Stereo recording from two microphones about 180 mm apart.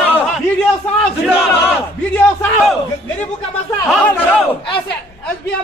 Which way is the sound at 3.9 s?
5° left (ahead or behind).